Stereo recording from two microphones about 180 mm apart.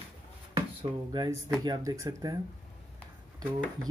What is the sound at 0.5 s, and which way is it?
Speech, 20° right (ahead or behind).